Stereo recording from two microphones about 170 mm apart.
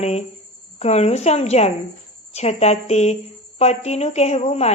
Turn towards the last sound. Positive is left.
turn(degrees=40)  # may be behind; listen again after turning